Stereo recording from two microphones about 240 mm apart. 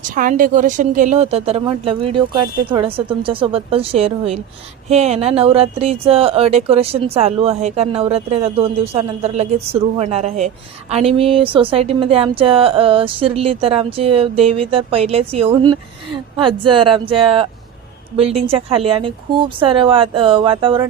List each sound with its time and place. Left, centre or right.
0.1 s speech: right